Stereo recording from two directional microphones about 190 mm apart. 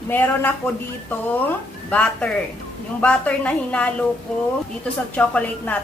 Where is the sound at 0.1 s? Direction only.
10° left (ahead or behind).